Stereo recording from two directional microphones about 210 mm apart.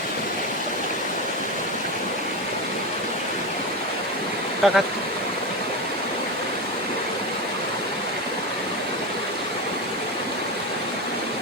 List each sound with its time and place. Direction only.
4.6 s speech: centre (ahead or behind)